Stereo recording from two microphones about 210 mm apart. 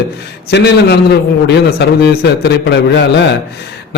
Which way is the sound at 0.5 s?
50° left (ahead or behind).